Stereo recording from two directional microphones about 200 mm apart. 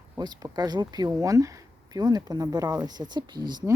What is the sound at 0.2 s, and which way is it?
Speech, 20° right (ahead or behind).